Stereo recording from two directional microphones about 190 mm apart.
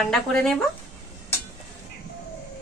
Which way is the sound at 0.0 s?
Centre (ahead or behind).